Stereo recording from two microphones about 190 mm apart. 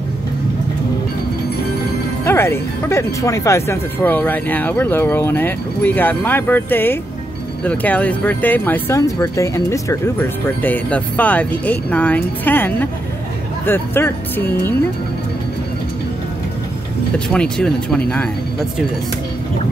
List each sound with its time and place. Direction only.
2.2 s speech: 10° left (ahead or behind)
17.3 s speech: 5° left (ahead or behind)